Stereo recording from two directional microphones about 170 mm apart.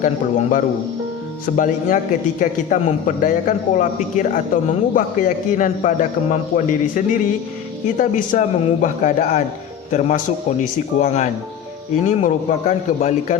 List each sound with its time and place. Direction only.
0.0 s a man's voice: 50° left (ahead or behind)